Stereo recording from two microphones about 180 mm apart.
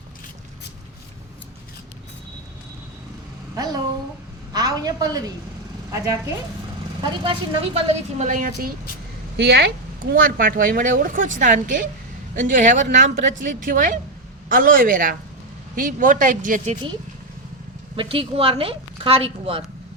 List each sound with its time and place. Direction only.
3.5 s a sound: 20° right (ahead or behind)
4.5 s a woman's voice: 20° right (ahead or behind)
7.0 s a woman's voice: 30° right (ahead or behind); by 8.7 s 50° right (ahead or behind)
9.4 s speech: 65° right (ahead or behind); by 16.7 s 45° right (ahead or behind)
17.9 s a woman's voice: 30° right (ahead or behind)